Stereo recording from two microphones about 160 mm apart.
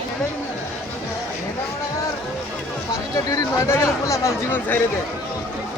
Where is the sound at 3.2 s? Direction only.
20° left (ahead or behind).